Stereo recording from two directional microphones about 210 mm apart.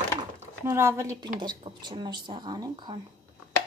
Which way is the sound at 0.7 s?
15° right (ahead or behind).